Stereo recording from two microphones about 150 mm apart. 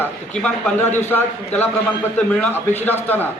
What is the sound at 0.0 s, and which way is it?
A man's voice, 10° left (ahead or behind).